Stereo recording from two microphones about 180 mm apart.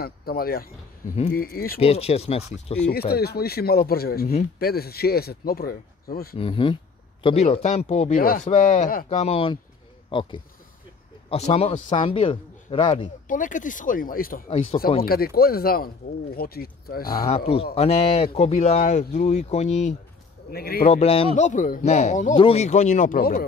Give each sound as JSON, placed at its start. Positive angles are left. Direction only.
{"t": 0.0, "sound": "speech", "side_deg": 55}
{"t": 1.8, "sound": "speech", "side_deg": 35}
{"t": 2.9, "sound": "speech", "side_deg": 60}
{"t": 6.3, "sound": "speech", "side_deg": 30}
{"t": 11.2, "sound": "speech", "side_deg": 35}
{"t": 13.3, "sound": "speech", "side_deg": 45}
{"t": 17.7, "sound": "speech", "side_deg": 35}
{"t": 20.5, "sound": "speech", "side_deg": 60}
{"t": 20.9, "sound": "speech", "side_deg": 35}